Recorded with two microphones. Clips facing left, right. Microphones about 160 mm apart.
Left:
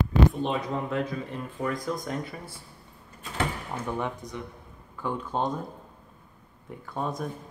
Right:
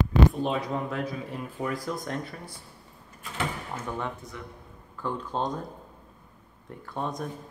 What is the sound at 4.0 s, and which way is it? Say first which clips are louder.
Speech: left 2 dB; 15° left (ahead or behind).